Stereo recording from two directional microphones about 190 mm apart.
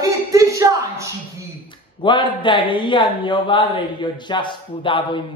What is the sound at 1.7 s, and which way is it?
Speech, 25° left (ahead or behind).